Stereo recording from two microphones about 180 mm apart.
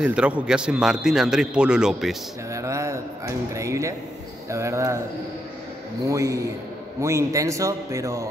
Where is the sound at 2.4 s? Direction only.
15° right (ahead or behind).